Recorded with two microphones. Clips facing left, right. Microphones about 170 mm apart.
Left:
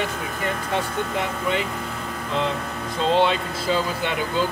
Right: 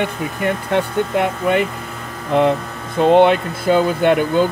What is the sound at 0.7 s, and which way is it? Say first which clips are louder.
Speech: right 8 dB; 60° right (ahead or behind).